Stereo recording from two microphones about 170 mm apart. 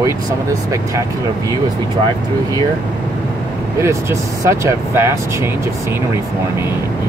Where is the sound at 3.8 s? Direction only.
15° right (ahead or behind).